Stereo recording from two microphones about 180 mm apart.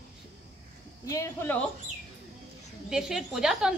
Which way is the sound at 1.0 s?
20° left (ahead or behind).